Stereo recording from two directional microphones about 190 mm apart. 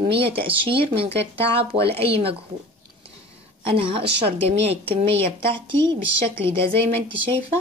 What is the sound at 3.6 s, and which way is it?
Speech, 30° right (ahead or behind).